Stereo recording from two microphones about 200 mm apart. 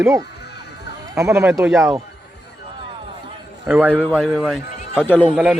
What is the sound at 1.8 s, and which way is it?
Speech, 15° right (ahead or behind).